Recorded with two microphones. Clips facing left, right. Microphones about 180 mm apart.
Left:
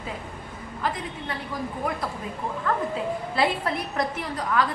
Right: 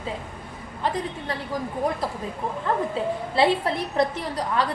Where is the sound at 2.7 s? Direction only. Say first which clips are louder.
Right 2 dB; 30° right (ahead or behind).